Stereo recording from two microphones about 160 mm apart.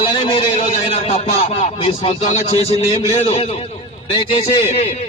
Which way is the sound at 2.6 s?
35° left (ahead or behind).